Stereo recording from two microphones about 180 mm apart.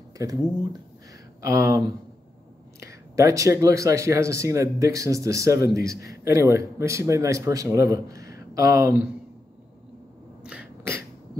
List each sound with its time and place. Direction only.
0.2 s speech: 20° right (ahead or behind)
2.8 s speech: 15° right (ahead or behind)
10.4 s sneeze: 5° right (ahead or behind)